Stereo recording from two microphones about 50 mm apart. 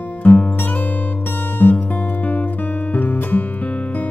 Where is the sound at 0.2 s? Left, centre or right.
Left.